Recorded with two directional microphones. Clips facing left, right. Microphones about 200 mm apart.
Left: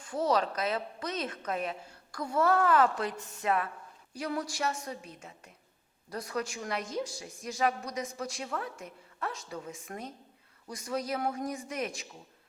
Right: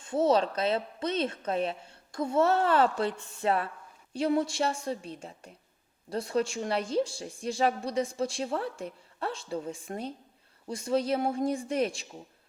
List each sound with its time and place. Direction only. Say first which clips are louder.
0.0 s a woman's voice: right 4 dB; 25° right (ahead or behind)